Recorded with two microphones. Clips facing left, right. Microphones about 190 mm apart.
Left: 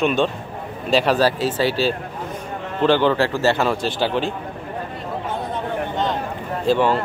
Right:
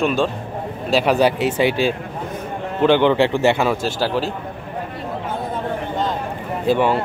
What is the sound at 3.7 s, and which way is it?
Speech, 5° right (ahead or behind).